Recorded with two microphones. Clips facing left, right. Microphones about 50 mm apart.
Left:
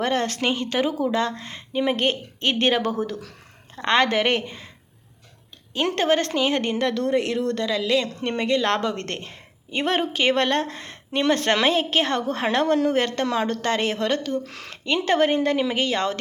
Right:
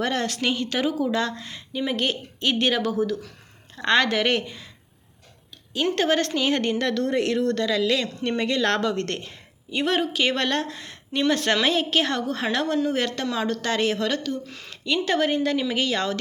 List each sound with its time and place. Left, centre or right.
0.0 s speech: left
3.8 s a woman's voice: left
5.7 s a woman's voice: left
12.6 s a woman's voice: left
12.9 s a woman's voice: left
14.3 s speech: left
15.0 s a woman's voice: left